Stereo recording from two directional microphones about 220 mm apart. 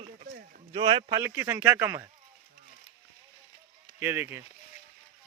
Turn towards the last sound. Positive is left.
turn(degrees=-10)  # may be behind; listen again after turning